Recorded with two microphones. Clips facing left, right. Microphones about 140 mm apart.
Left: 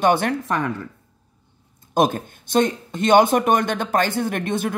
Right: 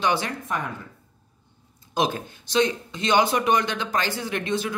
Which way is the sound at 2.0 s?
50° left (ahead or behind).